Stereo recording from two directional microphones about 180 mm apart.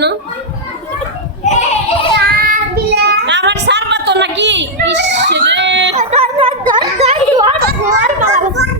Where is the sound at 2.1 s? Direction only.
55° right (ahead or behind); by 5.9 s 85° right.